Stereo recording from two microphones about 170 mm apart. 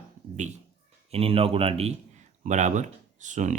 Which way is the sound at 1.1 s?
35° right (ahead or behind).